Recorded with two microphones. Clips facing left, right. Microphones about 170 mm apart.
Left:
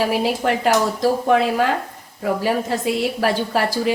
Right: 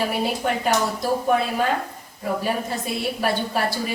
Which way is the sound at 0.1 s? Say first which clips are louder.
Left 4 dB; 80° left.